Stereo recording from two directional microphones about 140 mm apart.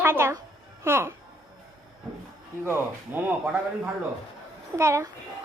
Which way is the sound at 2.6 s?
15° right (ahead or behind).